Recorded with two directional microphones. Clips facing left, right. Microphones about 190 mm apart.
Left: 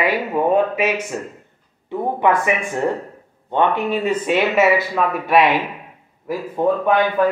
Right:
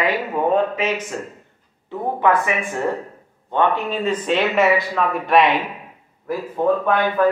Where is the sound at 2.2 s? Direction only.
15° left (ahead or behind).